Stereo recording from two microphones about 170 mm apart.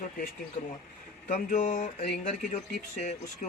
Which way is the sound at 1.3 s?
45° left (ahead or behind).